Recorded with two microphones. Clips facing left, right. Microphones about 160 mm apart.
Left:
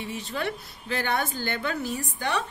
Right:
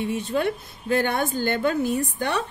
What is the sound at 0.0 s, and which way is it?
A woman's voice, 50° right (ahead or behind).